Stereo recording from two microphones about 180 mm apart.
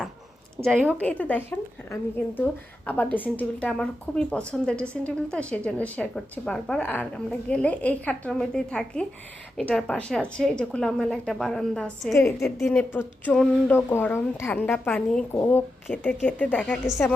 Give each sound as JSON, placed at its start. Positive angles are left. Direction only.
{"t": 0.6, "sound": "a woman's voice", "side_deg": 5}
{"t": 12.1, "sound": "a woman's voice", "side_deg": 15}
{"t": 12.5, "sound": "a woman's voice", "side_deg": 0}
{"t": 12.7, "sound": "a woman's voice", "side_deg": 10}